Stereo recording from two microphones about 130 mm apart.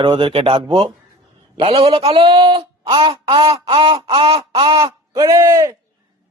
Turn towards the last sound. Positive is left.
turn(degrees=-25)  # may be behind; listen again after turning